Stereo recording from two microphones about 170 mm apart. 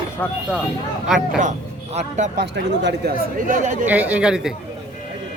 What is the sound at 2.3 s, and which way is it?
Speech, 75° right (ahead or behind).